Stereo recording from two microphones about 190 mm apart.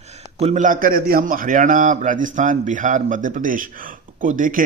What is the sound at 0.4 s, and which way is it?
A man's voice, 40° right (ahead or behind).